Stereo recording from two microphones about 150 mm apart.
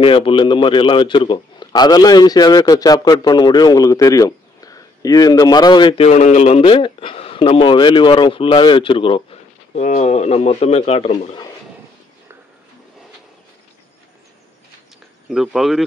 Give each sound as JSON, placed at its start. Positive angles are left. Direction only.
{"t": 0.0, "sound": "a man's voice", "side_deg": 35}
{"t": 6.0, "sound": "speech", "side_deg": 50}
{"t": 9.8, "sound": "speech", "side_deg": 50}
{"t": 15.2, "sound": "speech", "side_deg": 0}